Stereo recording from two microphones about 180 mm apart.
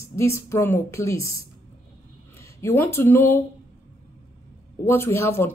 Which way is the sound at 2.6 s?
15° left (ahead or behind).